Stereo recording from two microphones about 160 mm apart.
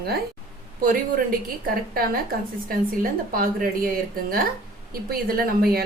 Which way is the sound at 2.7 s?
60° right (ahead or behind).